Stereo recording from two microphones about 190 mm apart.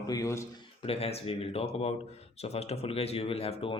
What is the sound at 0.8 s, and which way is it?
Speech, 30° left (ahead or behind).